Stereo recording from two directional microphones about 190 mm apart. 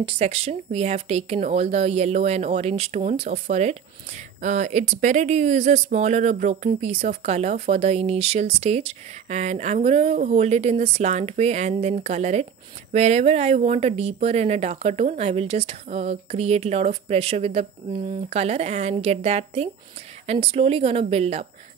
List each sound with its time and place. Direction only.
0.0 s speech: 30° right (ahead or behind)